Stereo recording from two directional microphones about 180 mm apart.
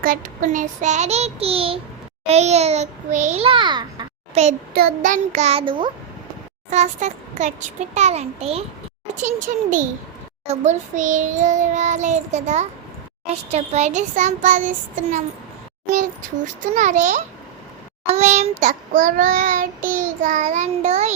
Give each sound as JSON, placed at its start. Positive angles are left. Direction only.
{"t": 0.0, "sound": "a child's voice", "side_deg": -50}
{"t": 4.4, "sound": "a child's voice", "side_deg": -40}
{"t": 4.7, "sound": "a child's voice", "side_deg": -55}
{"t": 6.7, "sound": "a child's voice", "side_deg": -40}
{"t": 9.2, "sound": "child singing", "side_deg": -45}
{"t": 16.7, "sound": "child singing", "side_deg": -40}